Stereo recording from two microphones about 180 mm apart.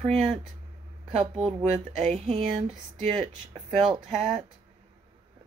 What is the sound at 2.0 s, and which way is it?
Speech, 40° right (ahead or behind).